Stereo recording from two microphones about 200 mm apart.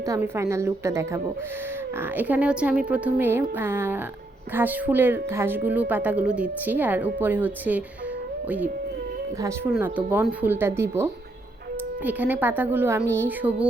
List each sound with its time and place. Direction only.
0.0 s speech: 15° right (ahead or behind)